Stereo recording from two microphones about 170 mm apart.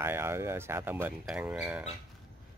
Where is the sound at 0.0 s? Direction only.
15° right (ahead or behind).